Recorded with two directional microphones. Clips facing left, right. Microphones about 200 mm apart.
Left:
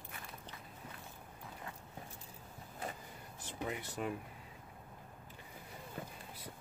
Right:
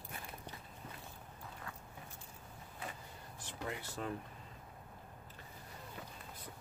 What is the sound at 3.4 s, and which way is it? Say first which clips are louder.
Speech: left 2 dB; 20° left (ahead or behind).